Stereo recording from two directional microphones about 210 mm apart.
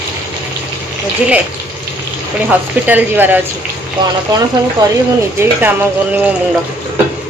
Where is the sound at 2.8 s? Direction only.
10° right (ahead or behind).